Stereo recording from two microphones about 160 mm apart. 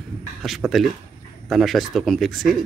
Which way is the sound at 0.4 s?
Centre (ahead or behind).